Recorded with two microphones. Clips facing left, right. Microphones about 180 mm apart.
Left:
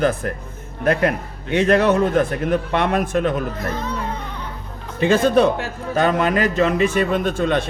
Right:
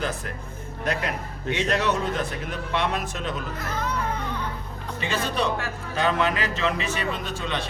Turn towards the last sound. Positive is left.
turn(degrees=50)  # may be behind; listen again after turning